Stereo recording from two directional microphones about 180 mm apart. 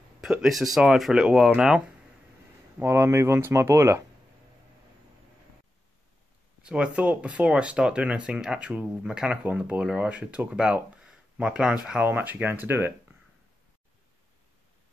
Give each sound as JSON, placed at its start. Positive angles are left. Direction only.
{"t": 0.2, "sound": "speech", "side_deg": 0}
{"t": 2.8, "sound": "speech", "side_deg": -15}
{"t": 6.6, "sound": "speech", "side_deg": -5}